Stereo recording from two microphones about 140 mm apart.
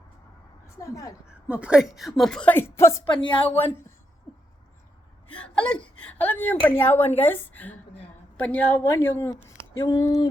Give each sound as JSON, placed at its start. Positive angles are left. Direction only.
{"t": 0.8, "sound": "speech", "side_deg": 20}
{"t": 1.3, "sound": "a woman's voice", "side_deg": -10}
{"t": 3.1, "sound": "a woman's voice", "side_deg": 35}
{"t": 5.3, "sound": "a woman's voice", "side_deg": 10}